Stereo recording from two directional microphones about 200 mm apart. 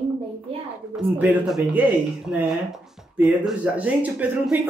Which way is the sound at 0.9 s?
5° right (ahead or behind).